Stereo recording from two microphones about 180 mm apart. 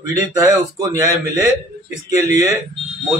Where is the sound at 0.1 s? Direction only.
20° right (ahead or behind).